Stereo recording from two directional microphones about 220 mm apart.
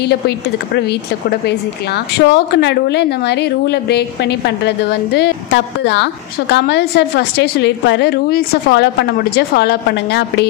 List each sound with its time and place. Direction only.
2.2 s a woman's voice: 50° left (ahead or behind)